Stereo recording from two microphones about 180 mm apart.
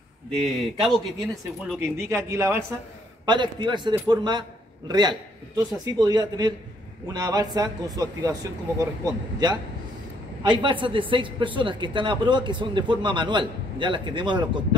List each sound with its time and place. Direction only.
0.4 s speech: centre (ahead or behind)
1.8 s speech: 15° right (ahead or behind)
3.3 s a man's voice: 25° right (ahead or behind)